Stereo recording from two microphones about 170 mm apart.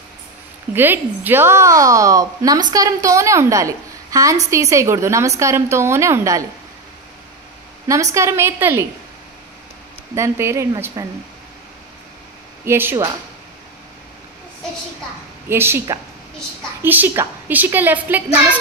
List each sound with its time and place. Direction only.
0.7 s a woman's voice: 10° right (ahead or behind)
7.9 s a woman's voice: 20° right (ahead or behind)
10.1 s a woman's voice: 15° right (ahead or behind)
12.6 s a woman's voice: 15° right (ahead or behind)
15.4 s a woman's voice: 15° right (ahead or behind)